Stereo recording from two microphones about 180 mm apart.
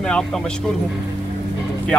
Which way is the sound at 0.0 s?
5° left (ahead or behind).